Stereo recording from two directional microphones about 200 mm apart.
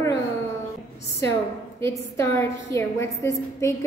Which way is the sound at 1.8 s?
15° left (ahead or behind).